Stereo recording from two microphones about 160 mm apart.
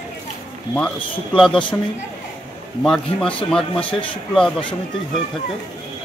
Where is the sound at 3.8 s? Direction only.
30° left (ahead or behind).